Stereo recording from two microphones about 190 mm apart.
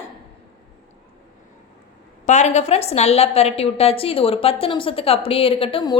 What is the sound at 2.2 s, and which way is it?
A woman's voice, 40° left (ahead or behind).